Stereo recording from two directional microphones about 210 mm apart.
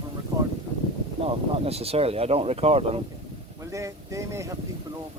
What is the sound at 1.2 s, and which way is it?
Speech, 30° right (ahead or behind).